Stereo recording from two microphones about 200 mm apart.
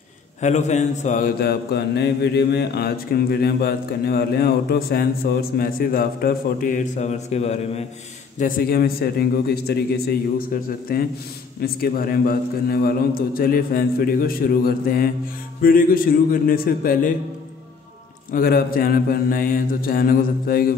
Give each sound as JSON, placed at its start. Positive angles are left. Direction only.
{"t": 0.4, "sound": "mantra", "side_deg": 35}
{"t": 8.4, "sound": "mantra", "side_deg": 45}
{"t": 18.3, "sound": "mantra", "side_deg": 45}